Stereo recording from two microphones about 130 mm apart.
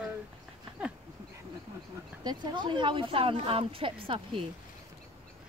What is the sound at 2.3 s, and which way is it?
Speech, 35° right (ahead or behind).